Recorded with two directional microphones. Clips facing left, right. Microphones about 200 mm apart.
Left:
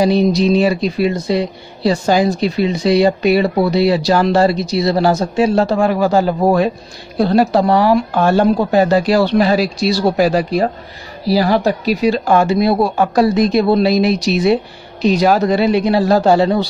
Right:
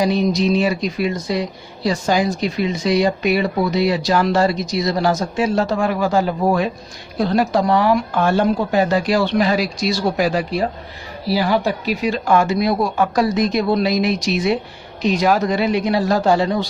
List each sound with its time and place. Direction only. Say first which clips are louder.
0.0 s speech: left 4 dB; 30° left (ahead or behind)